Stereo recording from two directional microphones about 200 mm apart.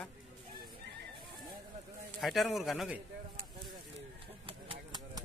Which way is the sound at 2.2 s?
Centre (ahead or behind).